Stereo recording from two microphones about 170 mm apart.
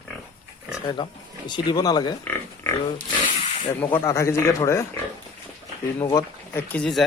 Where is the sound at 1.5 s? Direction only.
25° left (ahead or behind).